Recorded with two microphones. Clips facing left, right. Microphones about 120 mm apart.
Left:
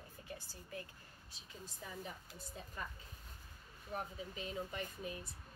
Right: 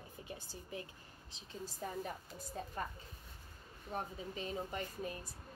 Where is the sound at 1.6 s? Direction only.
40° right (ahead or behind).